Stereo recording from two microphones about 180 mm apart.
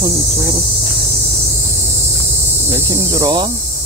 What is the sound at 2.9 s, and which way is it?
Speech, 20° right (ahead or behind).